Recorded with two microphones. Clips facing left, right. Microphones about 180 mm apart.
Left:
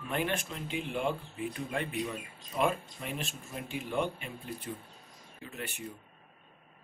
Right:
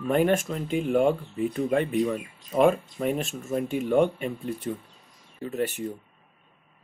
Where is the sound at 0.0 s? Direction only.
45° right (ahead or behind).